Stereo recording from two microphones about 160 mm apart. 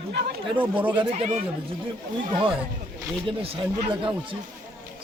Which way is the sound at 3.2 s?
35° right (ahead or behind).